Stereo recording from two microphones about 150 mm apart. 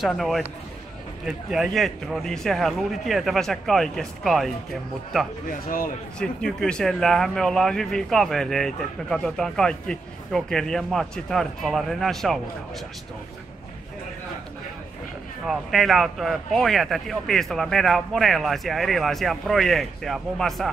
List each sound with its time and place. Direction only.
0.0 s speech: centre (ahead or behind)
5.5 s speech: 70° left (ahead or behind)
6.1 s speech: 5° left (ahead or behind)
15.4 s speech: centre (ahead or behind)